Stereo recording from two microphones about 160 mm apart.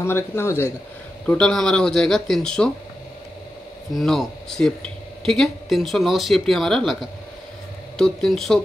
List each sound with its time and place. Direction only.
0.0 s a man's voice: 15° left (ahead or behind)
3.9 s speech: centre (ahead or behind)